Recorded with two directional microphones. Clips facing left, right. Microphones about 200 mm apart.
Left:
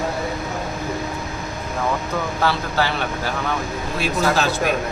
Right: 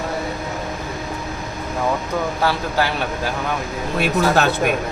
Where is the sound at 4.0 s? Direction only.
60° right (ahead or behind).